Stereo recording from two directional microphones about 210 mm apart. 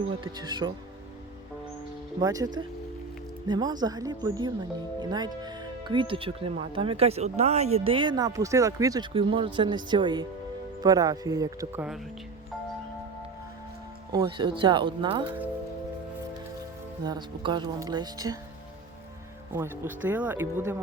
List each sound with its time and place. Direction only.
0.3 s speech: 20° right (ahead or behind)
2.1 s speech: 15° right (ahead or behind)
14.1 s speech: 20° right (ahead or behind)
17.1 s speech: 20° right (ahead or behind)
19.5 s speech: 10° right (ahead or behind)